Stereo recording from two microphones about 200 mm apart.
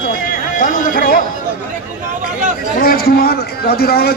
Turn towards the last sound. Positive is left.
turn(degrees=50)  # may be behind; listen again after turning